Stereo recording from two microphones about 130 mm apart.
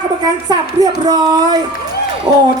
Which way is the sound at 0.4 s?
30° right (ahead or behind).